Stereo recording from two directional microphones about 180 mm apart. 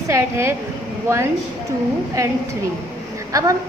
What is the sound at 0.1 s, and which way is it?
Speech, 15° right (ahead or behind).